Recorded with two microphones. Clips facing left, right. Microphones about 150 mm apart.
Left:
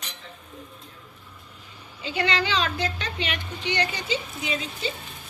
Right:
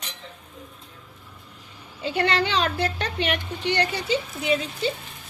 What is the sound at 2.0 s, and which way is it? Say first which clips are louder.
Speech: right 3 dB; 55° right (ahead or behind).